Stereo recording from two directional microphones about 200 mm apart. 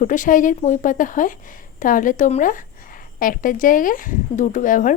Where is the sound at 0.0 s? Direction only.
40° left (ahead or behind).